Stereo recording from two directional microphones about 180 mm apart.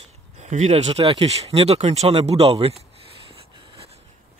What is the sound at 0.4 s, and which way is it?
Speech, 40° right (ahead or behind).